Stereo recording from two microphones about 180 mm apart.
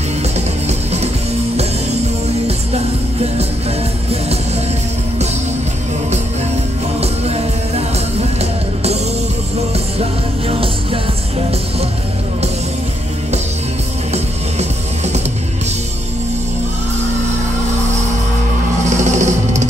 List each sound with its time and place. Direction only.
7.0 s music: 35° right (ahead or behind)
10.5 s music: 30° right (ahead or behind)
18.9 s music: 40° right (ahead or behind)